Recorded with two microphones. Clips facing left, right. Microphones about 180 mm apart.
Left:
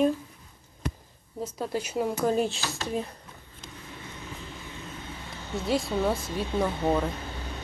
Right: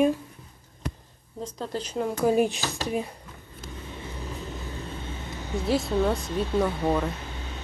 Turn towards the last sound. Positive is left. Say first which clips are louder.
# right 1 dB
turn(degrees=0)  # may be behind; listen again after turning